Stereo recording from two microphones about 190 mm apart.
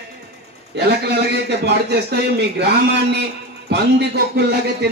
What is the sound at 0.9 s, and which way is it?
A man's voice, 60° right (ahead or behind).